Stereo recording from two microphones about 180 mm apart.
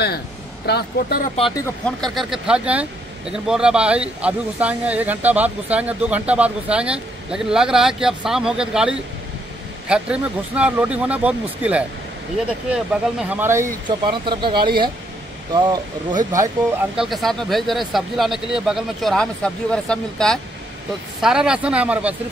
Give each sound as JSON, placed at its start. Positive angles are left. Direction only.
{"t": 0.7, "sound": "speech", "side_deg": 65}
{"t": 1.9, "sound": "speech", "side_deg": 5}
{"t": 13.8, "sound": "speech", "side_deg": -25}
{"t": 16.9, "sound": "speech", "side_deg": 0}